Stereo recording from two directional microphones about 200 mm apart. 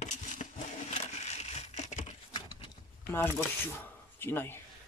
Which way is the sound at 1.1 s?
35° left (ahead or behind).